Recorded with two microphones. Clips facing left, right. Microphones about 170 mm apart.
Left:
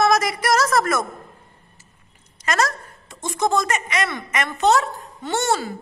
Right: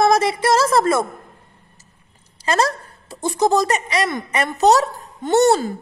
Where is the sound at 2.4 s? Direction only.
30° right (ahead or behind).